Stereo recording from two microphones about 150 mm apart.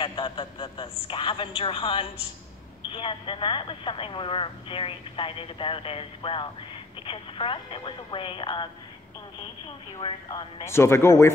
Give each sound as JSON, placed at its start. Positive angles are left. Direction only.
{"t": 0.0, "sound": "speech", "side_deg": 30}
{"t": 10.0, "sound": "speech", "side_deg": 30}
{"t": 10.6, "sound": "a man's voice", "side_deg": 15}